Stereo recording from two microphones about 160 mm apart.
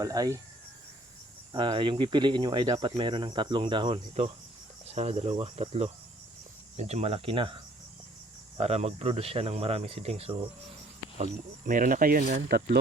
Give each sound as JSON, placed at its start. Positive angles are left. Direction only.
{"t": 0.0, "sound": "speech", "side_deg": -20}
{"t": 1.5, "sound": "speech", "side_deg": -30}
{"t": 4.9, "sound": "speech", "side_deg": -45}
{"t": 11.2, "sound": "speech", "side_deg": -55}